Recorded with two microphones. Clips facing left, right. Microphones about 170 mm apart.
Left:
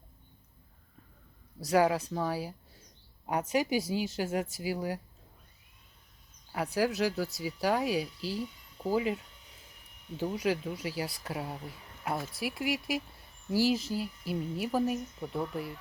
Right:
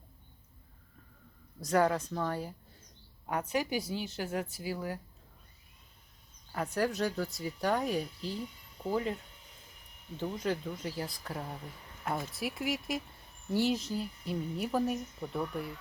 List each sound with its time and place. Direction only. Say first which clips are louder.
1.6 s speech: left 2 dB; 10° left (ahead or behind)
6.5 s speech: left 2 dB; 5° left (ahead or behind)
10.2 s speech: left 3 dB; 10° left (ahead or behind)